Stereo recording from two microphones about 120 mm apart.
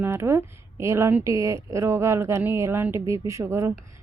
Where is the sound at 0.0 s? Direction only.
20° right (ahead or behind).